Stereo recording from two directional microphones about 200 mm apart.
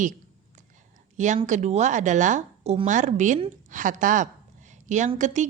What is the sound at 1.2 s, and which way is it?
A woman's voice, 40° right (ahead or behind).